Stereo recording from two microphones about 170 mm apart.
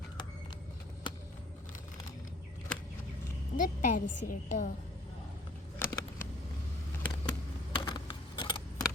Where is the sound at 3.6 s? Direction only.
50° left (ahead or behind).